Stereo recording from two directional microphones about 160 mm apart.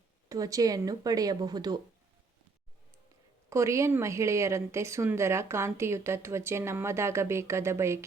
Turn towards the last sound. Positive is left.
turn(degrees=-15)  # may be behind; listen again after turning